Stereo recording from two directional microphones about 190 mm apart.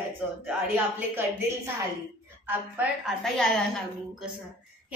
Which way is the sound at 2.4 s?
10° right (ahead or behind).